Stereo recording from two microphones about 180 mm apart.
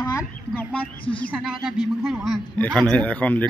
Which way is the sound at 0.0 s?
20° left (ahead or behind).